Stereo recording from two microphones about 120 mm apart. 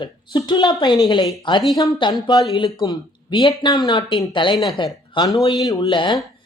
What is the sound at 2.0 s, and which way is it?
Speech, 40° left (ahead or behind).